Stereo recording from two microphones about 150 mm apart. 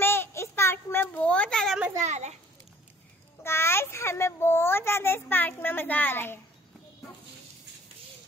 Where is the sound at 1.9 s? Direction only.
50° right (ahead or behind).